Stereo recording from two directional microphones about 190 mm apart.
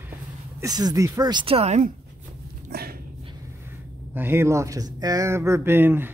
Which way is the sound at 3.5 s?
10° right (ahead or behind).